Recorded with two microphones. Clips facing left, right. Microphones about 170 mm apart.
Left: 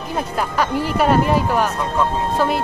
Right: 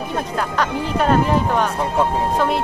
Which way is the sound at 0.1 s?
10° left (ahead or behind).